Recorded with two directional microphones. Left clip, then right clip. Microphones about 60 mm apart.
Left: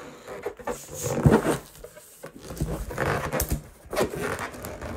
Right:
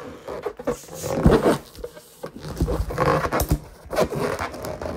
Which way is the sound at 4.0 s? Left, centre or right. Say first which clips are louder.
Right 4 dB; right.